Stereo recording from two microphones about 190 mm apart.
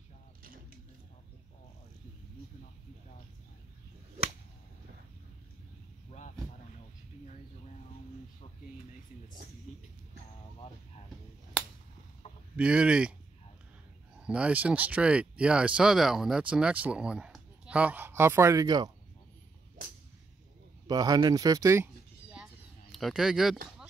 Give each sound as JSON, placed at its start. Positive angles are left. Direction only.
{"t": 12.5, "sound": "speech", "side_deg": -5}
{"t": 14.2, "sound": "speech", "side_deg": -5}
{"t": 20.8, "sound": "speech", "side_deg": -20}
{"t": 22.3, "sound": "a sound", "side_deg": 0}